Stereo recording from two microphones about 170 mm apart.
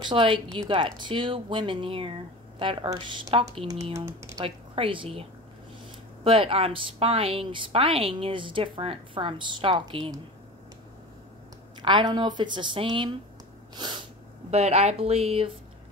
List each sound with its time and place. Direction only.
0.0 s speech: 30° right (ahead or behind)
4.0 s speech: 15° right (ahead or behind)
4.5 s speech: 30° right (ahead or behind)
6.2 s speech: 30° right (ahead or behind)
11.8 s speech: 25° right (ahead or behind)
14.5 s speech: 40° right (ahead or behind)